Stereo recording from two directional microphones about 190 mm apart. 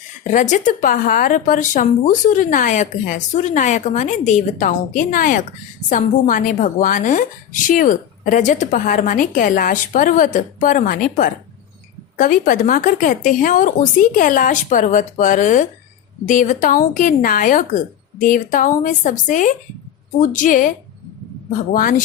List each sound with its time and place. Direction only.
0.3 s a woman's voice: 40° left (ahead or behind)